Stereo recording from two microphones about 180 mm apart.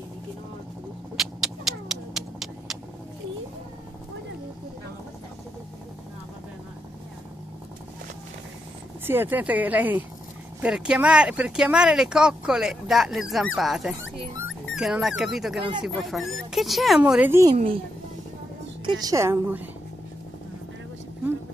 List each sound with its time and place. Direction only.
1.1 s cat: centre (ahead or behind)
9.0 s speech: 10° right (ahead or behind)
14.0 s a sound: 90° left
14.8 s speech: centre (ahead or behind)
18.9 s speech: 20° right (ahead or behind)